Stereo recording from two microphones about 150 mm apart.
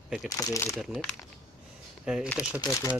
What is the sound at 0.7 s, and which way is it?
Speech, centre (ahead or behind).